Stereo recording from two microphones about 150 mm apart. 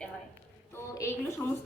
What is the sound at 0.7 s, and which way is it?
Speech, 20° left (ahead or behind).